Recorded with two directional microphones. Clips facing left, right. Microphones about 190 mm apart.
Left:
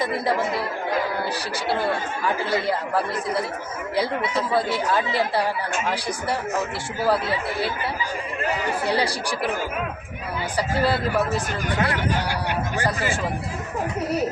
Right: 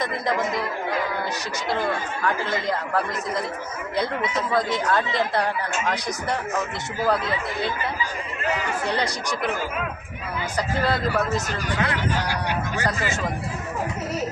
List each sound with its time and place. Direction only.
0.0 s speech: 5° left (ahead or behind)
1.7 s speech: 10° left (ahead or behind)
7.0 s speech: 10° left (ahead or behind)
10.6 s speech: 10° left (ahead or behind)
11.3 s speech: 35° left (ahead or behind)